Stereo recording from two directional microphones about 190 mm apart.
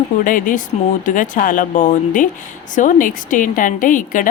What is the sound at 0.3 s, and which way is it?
A woman's voice, 45° left (ahead or behind).